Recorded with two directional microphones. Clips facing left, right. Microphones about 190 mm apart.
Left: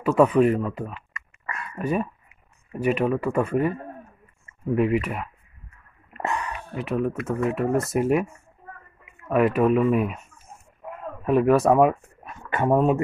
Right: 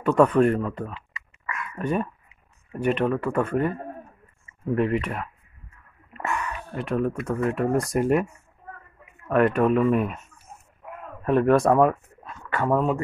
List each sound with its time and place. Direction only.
0.0 s speech: 5° left (ahead or behind)
1.4 s a sound: 35° left (ahead or behind)
1.8 s speech: 5° left (ahead or behind)
4.7 s speech: 5° left (ahead or behind)
6.7 s speech: 5° left (ahead or behind)
9.3 s speech: 5° left (ahead or behind)
11.2 s speech: 5° left (ahead or behind)
12.2 s a sound: 20° left (ahead or behind)